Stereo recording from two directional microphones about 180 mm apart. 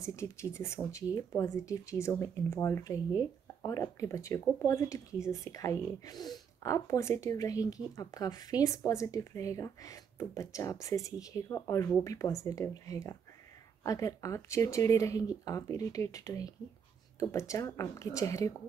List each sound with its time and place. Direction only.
0.0 s speech: 15° left (ahead or behind)